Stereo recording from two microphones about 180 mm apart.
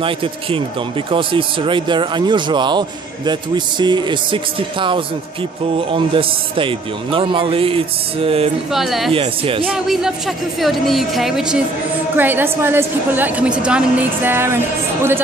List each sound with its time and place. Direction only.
0.0 s speech: 30° right (ahead or behind)
8.7 s speech: centre (ahead or behind)
9.1 s speech: 30° right (ahead or behind)
9.7 s a woman's voice: 5° right (ahead or behind)